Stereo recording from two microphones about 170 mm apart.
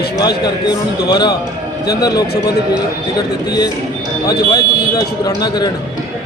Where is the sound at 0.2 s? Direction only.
25° left (ahead or behind).